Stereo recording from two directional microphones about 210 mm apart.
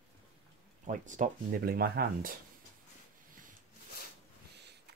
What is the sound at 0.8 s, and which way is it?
Speech, 35° right (ahead or behind).